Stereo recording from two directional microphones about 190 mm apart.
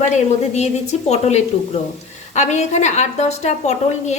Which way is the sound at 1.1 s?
35° left (ahead or behind).